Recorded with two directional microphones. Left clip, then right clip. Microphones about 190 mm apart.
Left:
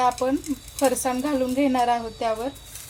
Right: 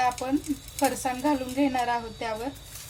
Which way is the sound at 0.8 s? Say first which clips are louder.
Left 4 dB; 40° left (ahead or behind).